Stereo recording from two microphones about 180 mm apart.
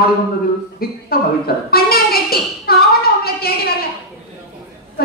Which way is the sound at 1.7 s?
60° left (ahead or behind).